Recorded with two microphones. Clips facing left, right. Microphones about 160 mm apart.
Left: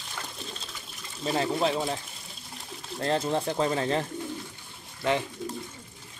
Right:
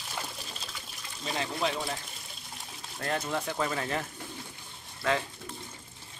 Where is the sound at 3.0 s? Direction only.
30° left (ahead or behind).